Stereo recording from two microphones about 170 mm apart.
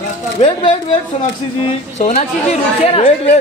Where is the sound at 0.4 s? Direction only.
25° left (ahead or behind).